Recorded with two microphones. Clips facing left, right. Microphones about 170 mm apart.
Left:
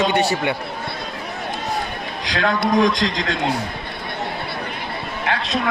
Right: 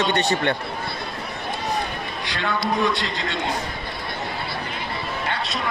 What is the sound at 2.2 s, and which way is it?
A man's voice, 90° left.